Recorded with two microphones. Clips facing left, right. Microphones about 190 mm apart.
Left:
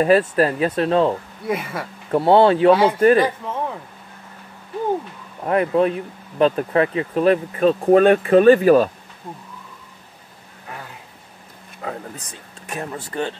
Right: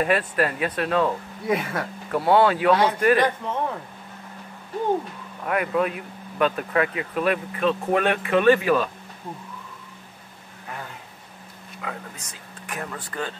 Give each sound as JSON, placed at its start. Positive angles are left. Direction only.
{"t": 0.0, "sound": "speech", "side_deg": 30}
{"t": 1.4, "sound": "speech", "side_deg": 0}
{"t": 2.0, "sound": "speech", "side_deg": 25}
{"t": 2.7, "sound": "speech", "side_deg": 5}
{"t": 3.0, "sound": "speech", "side_deg": 30}
{"t": 5.4, "sound": "speech", "side_deg": 30}
{"t": 11.8, "sound": "speech", "side_deg": 35}